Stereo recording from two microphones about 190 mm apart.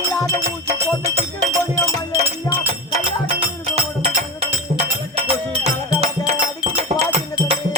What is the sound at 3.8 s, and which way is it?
Music, 30° right (ahead or behind).